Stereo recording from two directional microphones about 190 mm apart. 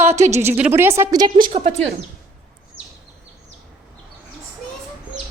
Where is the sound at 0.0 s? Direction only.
35° right (ahead or behind).